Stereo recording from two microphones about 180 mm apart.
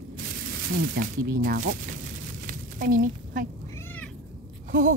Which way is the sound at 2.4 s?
50° right (ahead or behind).